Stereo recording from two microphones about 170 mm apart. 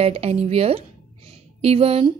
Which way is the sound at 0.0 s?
35° right (ahead or behind).